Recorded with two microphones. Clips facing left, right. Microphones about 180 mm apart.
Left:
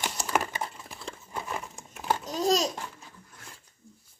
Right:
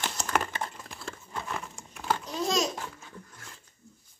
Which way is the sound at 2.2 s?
40° left (ahead or behind).